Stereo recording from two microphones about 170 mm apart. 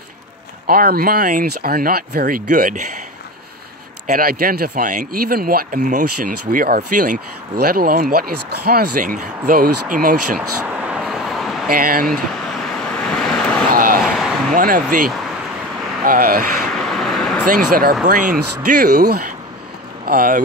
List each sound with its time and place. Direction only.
0.7 s speech: 60° right (ahead or behind)
4.1 s speech: 60° right (ahead or behind)
10.6 s vehicle: 5° right (ahead or behind)
11.7 s speech: 60° right (ahead or behind)
12.1 s vehicle: 5° left (ahead or behind)
13.7 s a sound: 60° right (ahead or behind)
14.5 s speech: 55° right (ahead or behind)
16.1 s speech: 60° right (ahead or behind)
16.7 s vehicle: centre (ahead or behind)
17.5 s speech: 55° right (ahead or behind)